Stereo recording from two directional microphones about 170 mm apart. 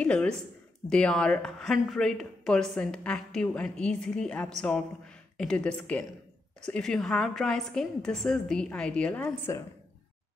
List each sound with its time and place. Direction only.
0.0 s a woman's voice: 5° left (ahead or behind)
9.4 s a woman's voice: 15° left (ahead or behind)